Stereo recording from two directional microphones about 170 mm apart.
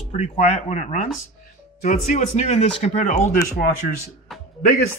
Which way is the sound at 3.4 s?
60° left (ahead or behind).